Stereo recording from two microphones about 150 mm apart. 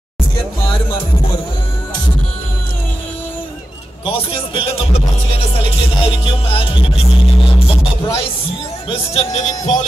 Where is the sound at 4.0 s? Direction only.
40° left (ahead or behind).